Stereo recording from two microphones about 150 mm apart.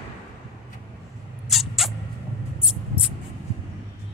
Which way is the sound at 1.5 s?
Centre (ahead or behind).